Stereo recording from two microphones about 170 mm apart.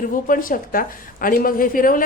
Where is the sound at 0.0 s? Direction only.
55° left (ahead or behind).